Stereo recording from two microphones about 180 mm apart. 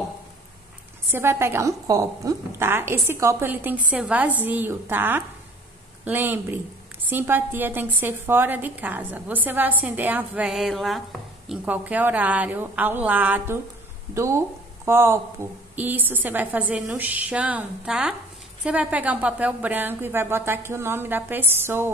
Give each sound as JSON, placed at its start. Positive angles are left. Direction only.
{"t": 1.1, "sound": "a woman's voice", "side_deg": -15}